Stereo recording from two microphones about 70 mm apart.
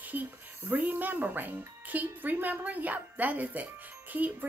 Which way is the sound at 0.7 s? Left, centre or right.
Right.